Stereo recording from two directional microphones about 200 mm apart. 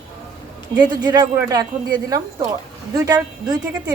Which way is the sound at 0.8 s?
20° right (ahead or behind).